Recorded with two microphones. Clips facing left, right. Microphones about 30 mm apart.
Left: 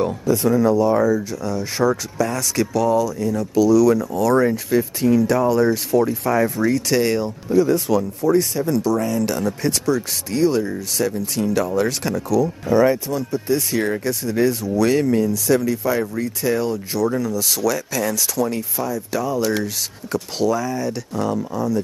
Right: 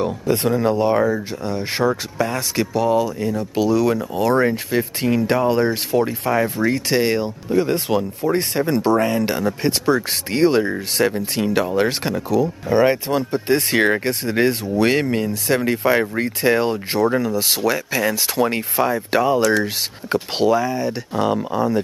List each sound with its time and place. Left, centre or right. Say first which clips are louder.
0.3 s speech: left 2 dB; right
7.5 s speech: left 2 dB; right
21.2 s speech: right 4 dB; right